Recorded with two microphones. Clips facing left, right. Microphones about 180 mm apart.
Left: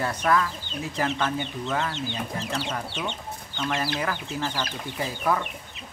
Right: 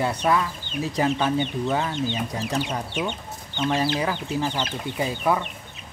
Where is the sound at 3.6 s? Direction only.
20° right (ahead or behind).